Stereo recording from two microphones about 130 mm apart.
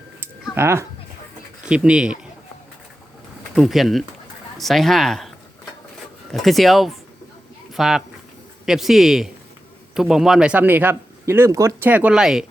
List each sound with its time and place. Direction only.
0.5 s speech: 20° right (ahead or behind)
1.6 s a man's voice: 5° right (ahead or behind)
3.5 s a man's voice: centre (ahead or behind)
6.3 s a man's voice: centre (ahead or behind); by 11.9 s 20° right (ahead or behind)
11.9 s a man's voice: 10° right (ahead or behind)